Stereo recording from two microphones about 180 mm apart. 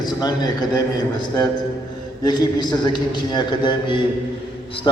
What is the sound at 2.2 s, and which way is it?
A man's voice, 25° left (ahead or behind).